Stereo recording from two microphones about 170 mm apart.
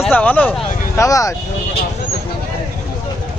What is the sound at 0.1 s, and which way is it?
Speech, 10° left (ahead or behind).